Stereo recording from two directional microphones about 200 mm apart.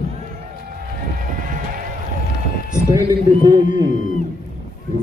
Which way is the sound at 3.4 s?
20° right (ahead or behind).